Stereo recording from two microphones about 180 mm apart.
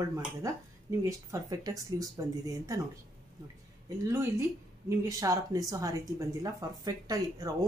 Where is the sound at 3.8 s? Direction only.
15° right (ahead or behind).